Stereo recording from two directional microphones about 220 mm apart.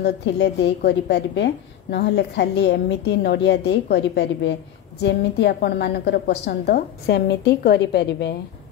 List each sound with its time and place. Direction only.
0.0 s a woman's voice: 50° left (ahead or behind)